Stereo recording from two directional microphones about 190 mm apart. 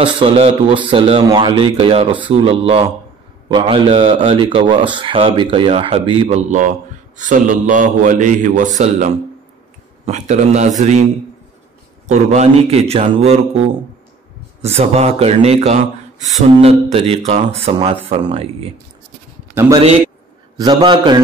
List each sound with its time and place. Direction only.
0.0 s a man's voice: 30° right (ahead or behind)
12.1 s speech: 35° right (ahead or behind)
14.6 s a man's voice: 35° right (ahead or behind)
19.7 s a man's voice: 30° right (ahead or behind)